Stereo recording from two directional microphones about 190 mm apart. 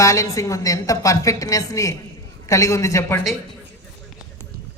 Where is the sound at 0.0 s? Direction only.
15° left (ahead or behind).